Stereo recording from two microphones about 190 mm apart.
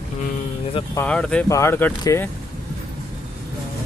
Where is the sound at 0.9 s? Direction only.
5° left (ahead or behind).